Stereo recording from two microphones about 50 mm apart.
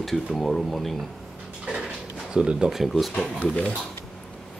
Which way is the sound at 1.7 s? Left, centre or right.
Centre.